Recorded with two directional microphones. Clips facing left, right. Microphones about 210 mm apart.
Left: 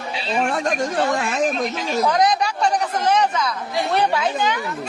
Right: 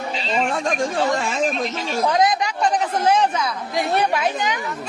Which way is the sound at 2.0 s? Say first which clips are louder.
Even; 20° right (ahead or behind).